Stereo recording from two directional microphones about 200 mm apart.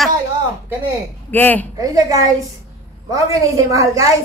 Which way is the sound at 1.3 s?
10° left (ahead or behind).